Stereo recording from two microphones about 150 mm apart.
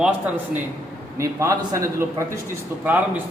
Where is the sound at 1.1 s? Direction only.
20° right (ahead or behind).